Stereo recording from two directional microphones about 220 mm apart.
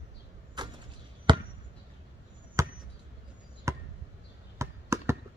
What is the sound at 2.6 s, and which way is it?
Chop, 15° right (ahead or behind).